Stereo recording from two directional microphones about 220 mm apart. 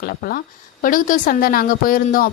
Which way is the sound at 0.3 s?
40° left (ahead or behind).